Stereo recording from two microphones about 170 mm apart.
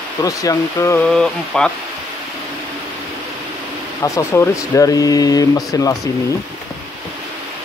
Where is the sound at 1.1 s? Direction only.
5° left (ahead or behind).